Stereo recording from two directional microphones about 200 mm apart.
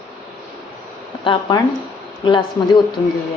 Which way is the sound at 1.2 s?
25° left (ahead or behind).